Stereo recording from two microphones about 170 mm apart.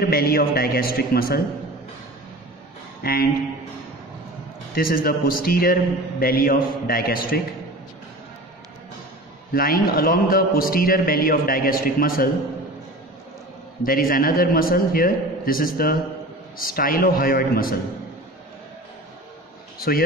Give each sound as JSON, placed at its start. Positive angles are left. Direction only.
{"t": 0.0, "sound": "a man's voice", "side_deg": 65}
{"t": 3.0, "sound": "speech", "side_deg": 60}
{"t": 4.7, "sound": "a man's voice", "side_deg": 60}
{"t": 9.5, "sound": "a man's voice", "side_deg": 60}
{"t": 13.8, "sound": "a man's voice", "side_deg": 55}
{"t": 19.8, "sound": "a man's voice", "side_deg": 60}